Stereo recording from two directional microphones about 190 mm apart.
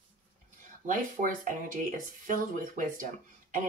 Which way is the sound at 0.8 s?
45° right (ahead or behind).